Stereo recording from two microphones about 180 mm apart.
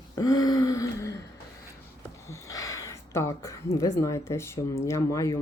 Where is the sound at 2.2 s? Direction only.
20° left (ahead or behind).